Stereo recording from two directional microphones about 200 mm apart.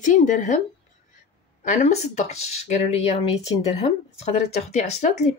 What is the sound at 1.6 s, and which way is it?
Speech, 35° left (ahead or behind).